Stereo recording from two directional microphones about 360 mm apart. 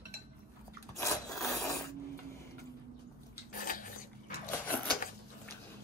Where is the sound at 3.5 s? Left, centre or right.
Left.